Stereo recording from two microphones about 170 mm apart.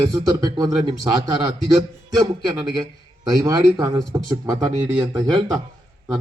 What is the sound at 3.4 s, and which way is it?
Speech, 20° right (ahead or behind).